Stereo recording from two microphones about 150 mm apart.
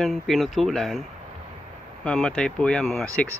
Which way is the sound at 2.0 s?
5° left (ahead or behind).